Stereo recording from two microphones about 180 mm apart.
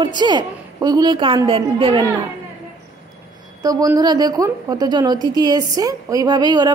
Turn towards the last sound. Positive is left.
turn(degrees=-25)  # may be behind; listen again after turning